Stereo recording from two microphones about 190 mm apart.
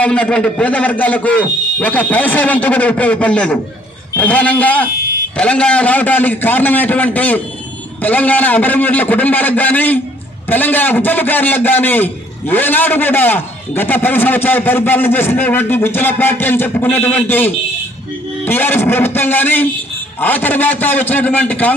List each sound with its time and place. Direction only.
0.0 s a man's voice: 5° left (ahead or behind)